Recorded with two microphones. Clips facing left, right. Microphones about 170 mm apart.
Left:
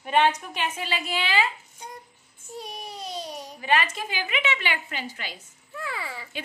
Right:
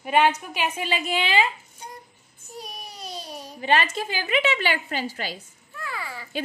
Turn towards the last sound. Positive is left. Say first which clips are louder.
# even
turn(degrees=25)  # may be behind; listen again after turning